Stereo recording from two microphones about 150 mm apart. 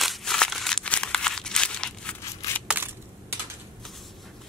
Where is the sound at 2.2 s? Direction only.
20° left (ahead or behind).